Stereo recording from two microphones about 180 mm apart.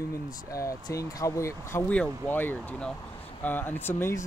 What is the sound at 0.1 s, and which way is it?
Speech, 20° left (ahead or behind).